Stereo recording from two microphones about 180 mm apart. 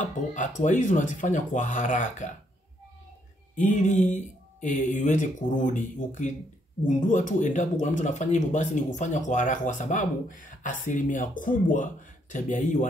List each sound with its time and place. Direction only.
0.0 s speech: 45° left (ahead or behind)
3.5 s speech: 45° left (ahead or behind)